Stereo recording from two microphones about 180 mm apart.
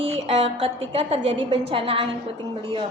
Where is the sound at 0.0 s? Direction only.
35° right (ahead or behind).